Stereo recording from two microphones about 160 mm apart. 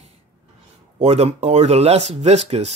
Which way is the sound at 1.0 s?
40° right (ahead or behind).